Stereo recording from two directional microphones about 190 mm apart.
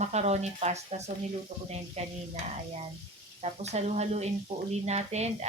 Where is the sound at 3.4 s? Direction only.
35° right (ahead or behind).